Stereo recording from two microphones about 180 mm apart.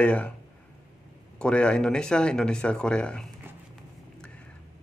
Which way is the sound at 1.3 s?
5° left (ahead or behind).